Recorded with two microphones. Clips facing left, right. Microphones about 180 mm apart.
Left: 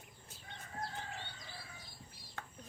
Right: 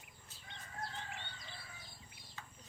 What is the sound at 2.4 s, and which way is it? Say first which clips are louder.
Chicken: left 5 dB; 55° left (ahead or behind).